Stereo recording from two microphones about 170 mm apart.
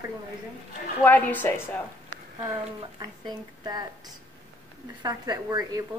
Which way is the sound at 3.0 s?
25° right (ahead or behind).